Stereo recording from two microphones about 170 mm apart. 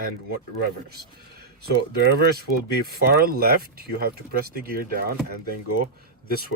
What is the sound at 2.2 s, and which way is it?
Speech, 65° right (ahead or behind).